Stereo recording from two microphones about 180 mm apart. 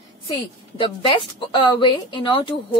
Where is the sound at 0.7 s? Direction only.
25° left (ahead or behind).